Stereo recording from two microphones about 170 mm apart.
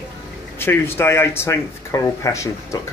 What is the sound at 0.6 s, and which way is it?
Speech, 15° left (ahead or behind).